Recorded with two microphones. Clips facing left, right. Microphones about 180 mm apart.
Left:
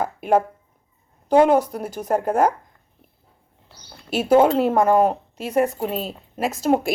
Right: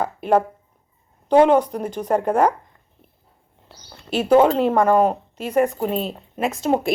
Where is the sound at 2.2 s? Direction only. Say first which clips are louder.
Right 1 dB; 45° left (ahead or behind).